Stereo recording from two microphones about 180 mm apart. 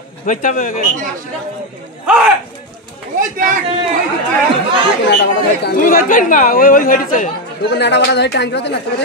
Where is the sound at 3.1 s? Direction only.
50° right (ahead or behind).